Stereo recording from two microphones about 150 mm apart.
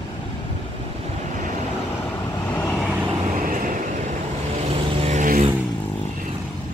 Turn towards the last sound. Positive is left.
turn(degrees=-60)  # may be behind; listen again after turning